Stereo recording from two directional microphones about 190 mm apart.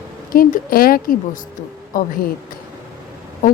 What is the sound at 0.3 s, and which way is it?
Speech, 50° left (ahead or behind).